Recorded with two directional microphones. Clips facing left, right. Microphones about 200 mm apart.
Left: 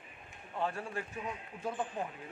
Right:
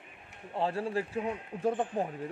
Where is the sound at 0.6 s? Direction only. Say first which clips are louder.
Right 6 dB; 30° right (ahead or behind).